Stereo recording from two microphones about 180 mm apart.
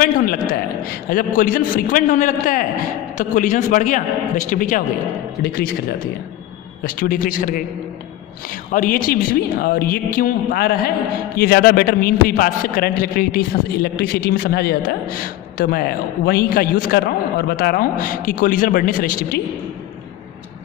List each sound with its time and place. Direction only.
0.0 s a man's voice: 50° left (ahead or behind)
6.8 s a man's voice: 50° left (ahead or behind)
8.7 s a man's voice: 50° left (ahead or behind)